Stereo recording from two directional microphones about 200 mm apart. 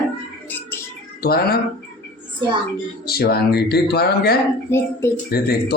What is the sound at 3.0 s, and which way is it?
A man's voice, 50° left (ahead or behind).